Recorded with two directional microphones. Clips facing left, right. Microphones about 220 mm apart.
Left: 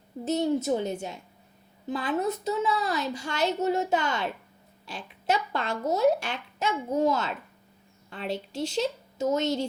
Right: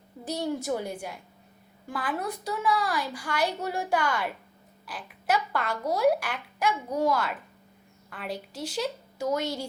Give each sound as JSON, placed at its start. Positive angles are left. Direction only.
{"t": 0.3, "sound": "a woman's voice", "side_deg": 20}